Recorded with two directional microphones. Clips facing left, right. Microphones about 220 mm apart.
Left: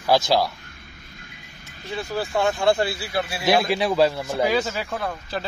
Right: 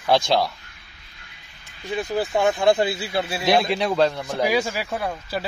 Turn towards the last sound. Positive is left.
turn(degrees=-10)  # may be behind; listen again after turning